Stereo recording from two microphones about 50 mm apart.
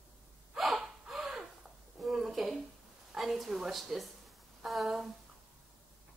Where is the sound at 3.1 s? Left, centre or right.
Centre.